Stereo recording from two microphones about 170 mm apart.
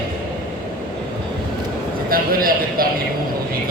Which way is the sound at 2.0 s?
60° right (ahead or behind).